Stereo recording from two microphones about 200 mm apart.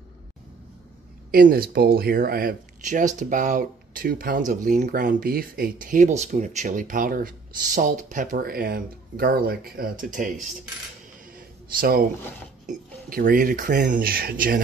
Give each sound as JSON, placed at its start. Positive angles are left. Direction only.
{"t": 1.3, "sound": "speech", "side_deg": -45}
{"t": 11.3, "sound": "a sound", "side_deg": -50}
{"t": 12.6, "sound": "speech", "side_deg": -45}